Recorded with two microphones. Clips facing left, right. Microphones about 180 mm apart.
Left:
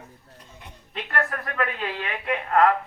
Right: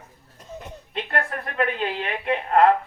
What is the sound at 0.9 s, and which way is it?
A man's voice, 25° right (ahead or behind).